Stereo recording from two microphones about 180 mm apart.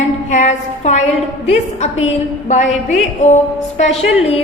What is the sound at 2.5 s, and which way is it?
A woman's voice, 40° left (ahead or behind).